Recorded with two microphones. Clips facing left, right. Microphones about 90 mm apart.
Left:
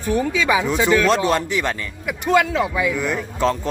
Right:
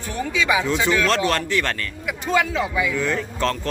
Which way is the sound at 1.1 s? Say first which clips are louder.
Left 3 dB; 15° left (ahead or behind).